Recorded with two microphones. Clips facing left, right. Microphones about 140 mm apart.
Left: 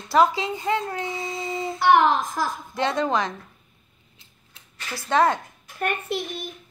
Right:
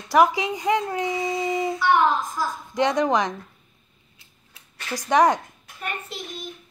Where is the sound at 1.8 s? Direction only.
75° left (ahead or behind).